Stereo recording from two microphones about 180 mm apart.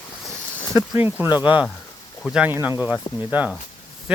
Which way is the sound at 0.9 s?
10° right (ahead or behind).